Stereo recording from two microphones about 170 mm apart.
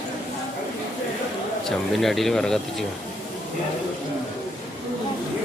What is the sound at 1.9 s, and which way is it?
Speech, centre (ahead or behind).